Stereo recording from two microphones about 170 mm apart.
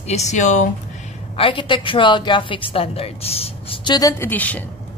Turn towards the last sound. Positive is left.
turn(degrees=10)  # may be behind; listen again after turning